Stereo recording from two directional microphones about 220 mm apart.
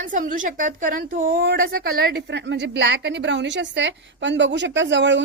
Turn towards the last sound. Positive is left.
turn(degrees=-55)  # may be behind; listen again after turning